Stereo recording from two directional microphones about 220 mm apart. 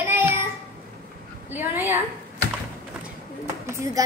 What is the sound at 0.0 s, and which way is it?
Child singing, 10° right (ahead or behind).